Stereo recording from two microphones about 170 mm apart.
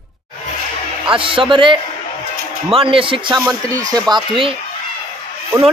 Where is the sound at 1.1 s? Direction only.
30° right (ahead or behind).